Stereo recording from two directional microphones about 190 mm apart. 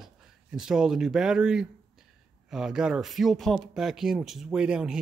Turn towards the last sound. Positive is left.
turn(degrees=-5)  # may be behind; listen again after turning